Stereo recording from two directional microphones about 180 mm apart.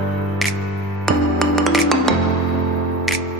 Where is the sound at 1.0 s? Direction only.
Centre (ahead or behind).